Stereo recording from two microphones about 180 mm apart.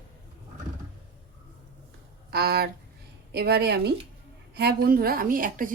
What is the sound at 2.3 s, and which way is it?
A woman's voice, 60° right (ahead or behind).